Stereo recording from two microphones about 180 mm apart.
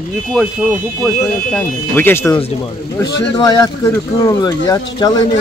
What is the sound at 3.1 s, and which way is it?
Speech, 75° left (ahead or behind).